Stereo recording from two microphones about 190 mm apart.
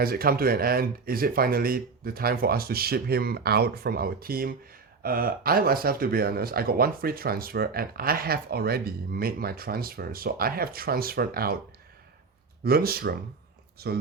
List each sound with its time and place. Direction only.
0.0 s speech: 50° right (ahead or behind)
12.6 s speech: 55° right (ahead or behind)